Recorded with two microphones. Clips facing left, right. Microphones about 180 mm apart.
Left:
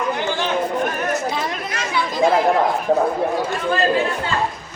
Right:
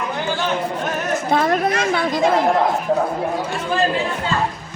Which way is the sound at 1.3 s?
50° right (ahead or behind).